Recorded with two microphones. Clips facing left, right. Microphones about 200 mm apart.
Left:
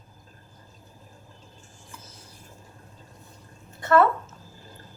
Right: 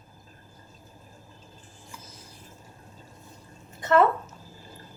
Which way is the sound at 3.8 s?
20° right (ahead or behind).